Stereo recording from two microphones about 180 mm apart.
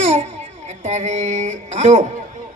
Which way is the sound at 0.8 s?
40° right (ahead or behind).